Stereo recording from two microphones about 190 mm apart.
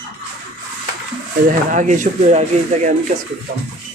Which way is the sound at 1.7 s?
40° right (ahead or behind).